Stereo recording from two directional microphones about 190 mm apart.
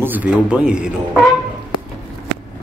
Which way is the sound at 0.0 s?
10° right (ahead or behind).